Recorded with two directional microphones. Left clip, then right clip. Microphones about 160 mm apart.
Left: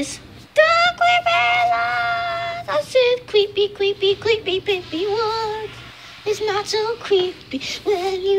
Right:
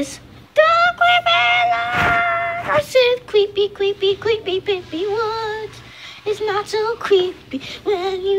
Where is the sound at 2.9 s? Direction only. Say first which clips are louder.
Left 1 dB; 5° right (ahead or behind).